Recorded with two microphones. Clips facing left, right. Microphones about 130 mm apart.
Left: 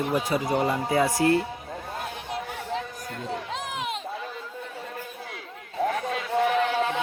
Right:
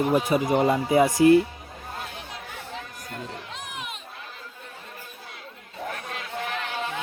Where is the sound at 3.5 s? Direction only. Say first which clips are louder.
Left 6 dB; 90° left.